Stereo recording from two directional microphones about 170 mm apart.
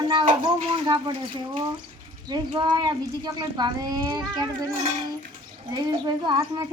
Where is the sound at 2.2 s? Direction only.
25° right (ahead or behind).